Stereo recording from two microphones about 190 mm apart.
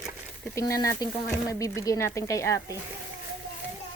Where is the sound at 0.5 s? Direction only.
20° left (ahead or behind).